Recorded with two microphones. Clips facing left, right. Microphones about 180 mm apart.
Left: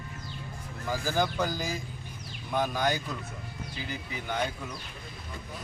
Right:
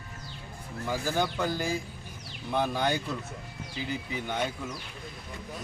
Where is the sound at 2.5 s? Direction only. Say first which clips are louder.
Even; 25° right (ahead or behind).